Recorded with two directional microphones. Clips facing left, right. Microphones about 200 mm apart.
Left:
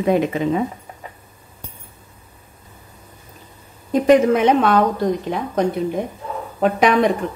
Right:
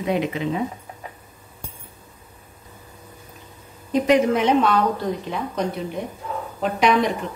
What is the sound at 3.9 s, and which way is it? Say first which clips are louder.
Speech: left 4 dB; 50° left (ahead or behind).